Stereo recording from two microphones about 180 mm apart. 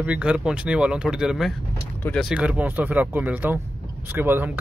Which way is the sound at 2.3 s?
5° right (ahead or behind).